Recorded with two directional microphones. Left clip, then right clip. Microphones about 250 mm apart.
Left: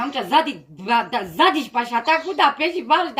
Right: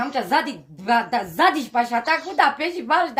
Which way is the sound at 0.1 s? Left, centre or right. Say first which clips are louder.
Left 2 dB; right.